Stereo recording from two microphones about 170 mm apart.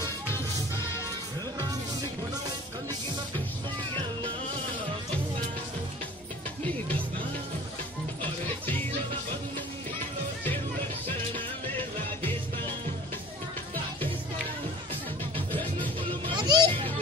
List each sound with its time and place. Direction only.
8.2 s music: 10° left (ahead or behind)
16.0 s music: 25° right (ahead or behind)